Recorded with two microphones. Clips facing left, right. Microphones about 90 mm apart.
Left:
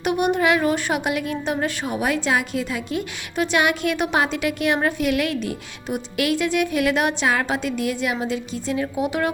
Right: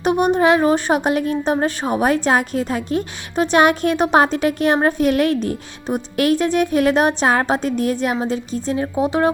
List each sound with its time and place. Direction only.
0.0 s a woman's voice: 35° right (ahead or behind)